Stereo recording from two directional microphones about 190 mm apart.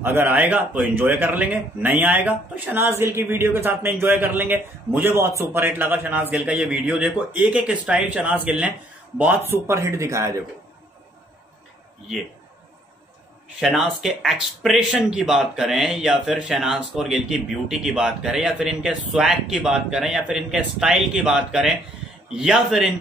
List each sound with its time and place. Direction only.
0.0 s a man's voice: 10° right (ahead or behind)
13.6 s speech: centre (ahead or behind)